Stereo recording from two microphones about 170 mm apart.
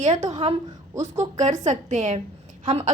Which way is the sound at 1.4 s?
45° right (ahead or behind).